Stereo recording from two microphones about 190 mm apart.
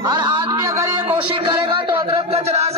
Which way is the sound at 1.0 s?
25° right (ahead or behind).